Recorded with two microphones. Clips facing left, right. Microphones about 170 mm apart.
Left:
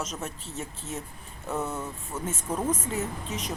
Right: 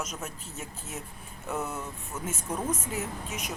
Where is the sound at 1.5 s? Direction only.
Centre (ahead or behind).